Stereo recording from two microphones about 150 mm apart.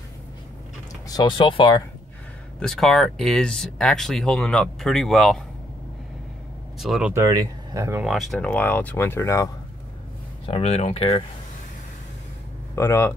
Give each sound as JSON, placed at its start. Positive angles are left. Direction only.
{"t": 1.0, "sound": "speech", "side_deg": 30}
{"t": 2.6, "sound": "speech", "side_deg": 0}
{"t": 6.8, "sound": "speech", "side_deg": -5}
{"t": 7.2, "sound": "speech", "side_deg": -20}
{"t": 8.0, "sound": "speech", "side_deg": 0}
{"t": 10.4, "sound": "speech", "side_deg": 40}
{"t": 12.7, "sound": "speech", "side_deg": 15}